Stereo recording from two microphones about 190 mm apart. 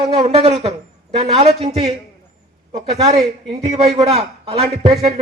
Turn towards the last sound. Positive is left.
turn(degrees=-30)  # may be behind; listen again after turning